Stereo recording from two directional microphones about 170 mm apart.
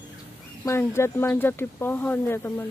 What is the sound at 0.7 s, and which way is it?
Speech, 15° left (ahead or behind).